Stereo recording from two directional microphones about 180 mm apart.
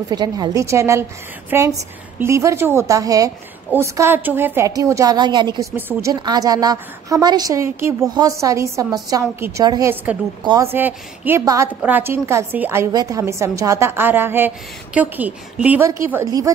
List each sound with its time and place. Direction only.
0.1 s a woman's voice: 20° right (ahead or behind)
5.8 s a woman's voice: 10° right (ahead or behind)
6.1 s a woman's voice: 20° right (ahead or behind)
10.7 s a woman's voice: 10° right (ahead or behind)